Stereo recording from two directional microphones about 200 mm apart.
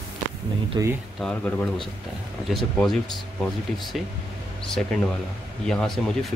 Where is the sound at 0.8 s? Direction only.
20° right (ahead or behind).